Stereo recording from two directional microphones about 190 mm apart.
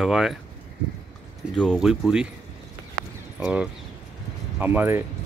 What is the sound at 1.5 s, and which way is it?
Speech, 5° left (ahead or behind).